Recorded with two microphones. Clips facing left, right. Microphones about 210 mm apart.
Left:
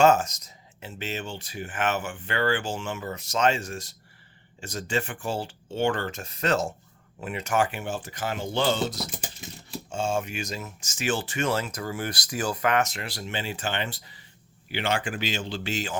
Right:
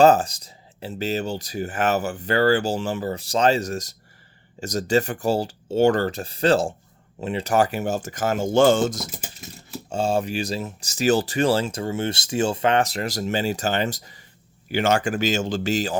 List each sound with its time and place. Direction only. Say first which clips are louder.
0.0 s speech: right 4 dB; 35° right (ahead or behind)
9.9 s speech: right 6 dB; 35° right (ahead or behind)